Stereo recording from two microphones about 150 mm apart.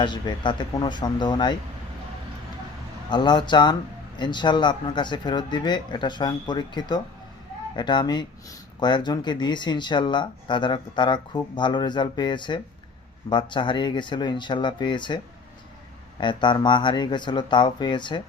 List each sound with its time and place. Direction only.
0.0 s speech: 30° left (ahead or behind)
3.1 s speech: 30° left (ahead or behind)
16.2 s speech: 30° left (ahead or behind)